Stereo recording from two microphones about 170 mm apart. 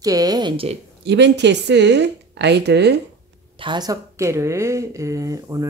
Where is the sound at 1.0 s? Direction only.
90° right.